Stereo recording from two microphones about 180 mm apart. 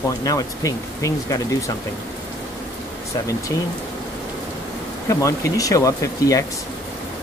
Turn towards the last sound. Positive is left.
turn(degrees=20)  # may be behind; listen again after turning